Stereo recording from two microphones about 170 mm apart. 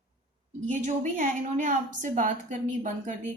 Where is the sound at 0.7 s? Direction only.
45° right (ahead or behind).